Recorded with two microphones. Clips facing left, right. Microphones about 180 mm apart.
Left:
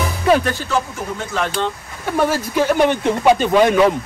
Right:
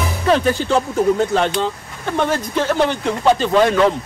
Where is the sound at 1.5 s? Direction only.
5° left (ahead or behind).